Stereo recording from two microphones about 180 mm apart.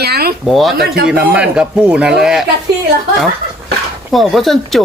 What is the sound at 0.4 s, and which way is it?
Speech, centre (ahead or behind).